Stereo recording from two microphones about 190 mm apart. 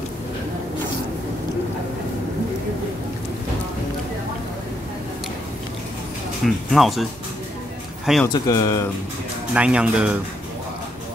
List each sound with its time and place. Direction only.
6.4 s speech: centre (ahead or behind)
8.3 s speech: 20° left (ahead or behind)
9.5 s speech: 5° right (ahead or behind)